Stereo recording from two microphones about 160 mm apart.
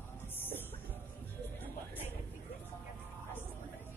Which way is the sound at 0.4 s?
10° left (ahead or behind).